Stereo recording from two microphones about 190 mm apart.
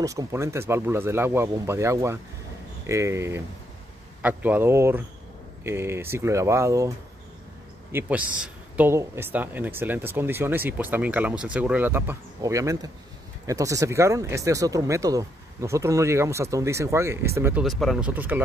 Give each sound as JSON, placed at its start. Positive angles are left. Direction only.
{"t": 0.0, "sound": "speech", "side_deg": -15}
{"t": 7.9, "sound": "speech", "side_deg": -5}
{"t": 17.6, "sound": "speech", "side_deg": 0}